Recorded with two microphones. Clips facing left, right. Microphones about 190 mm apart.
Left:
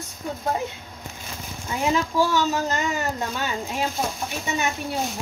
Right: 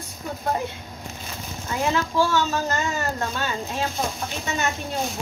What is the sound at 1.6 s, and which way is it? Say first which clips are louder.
A woman's voice: left 1 dB; 15° left (ahead or behind).